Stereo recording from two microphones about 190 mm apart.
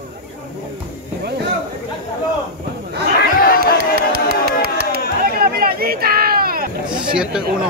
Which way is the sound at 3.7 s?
55° right (ahead or behind).